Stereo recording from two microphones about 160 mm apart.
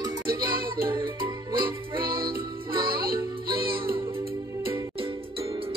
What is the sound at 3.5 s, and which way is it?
Music, 70° right (ahead or behind).